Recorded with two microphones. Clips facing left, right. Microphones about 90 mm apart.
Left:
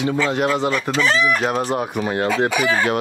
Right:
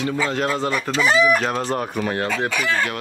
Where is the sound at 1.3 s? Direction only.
15° left (ahead or behind).